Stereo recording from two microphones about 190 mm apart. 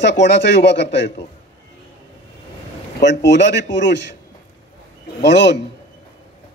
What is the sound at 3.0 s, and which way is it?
Speech, 65° left (ahead or behind).